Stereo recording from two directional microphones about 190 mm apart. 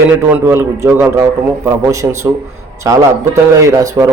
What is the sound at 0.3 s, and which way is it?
A man's voice, 10° right (ahead or behind).